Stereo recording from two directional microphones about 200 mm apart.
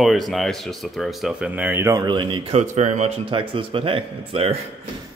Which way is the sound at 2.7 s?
35° right (ahead or behind).